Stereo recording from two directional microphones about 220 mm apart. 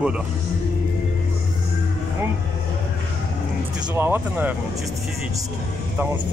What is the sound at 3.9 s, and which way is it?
Speech, 10° right (ahead or behind).